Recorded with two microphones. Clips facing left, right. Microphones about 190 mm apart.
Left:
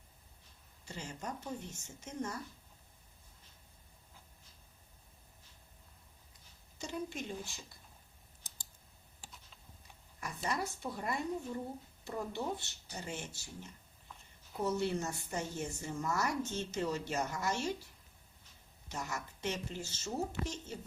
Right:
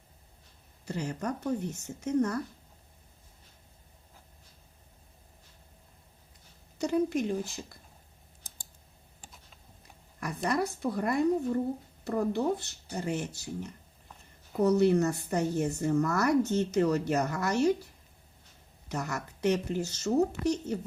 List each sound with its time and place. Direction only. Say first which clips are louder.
0.9 s a woman's voice: right 10 dB; 65° right (ahead or behind)
6.7 s a woman's voice: right 13 dB; 65° right (ahead or behind)
10.2 s a woman's voice: right 8 dB; 70° right (ahead or behind)
13.4 s a woman's voice: right 12 dB; 70° right (ahead or behind)
18.9 s a woman's voice: right 7 dB; 65° right (ahead or behind)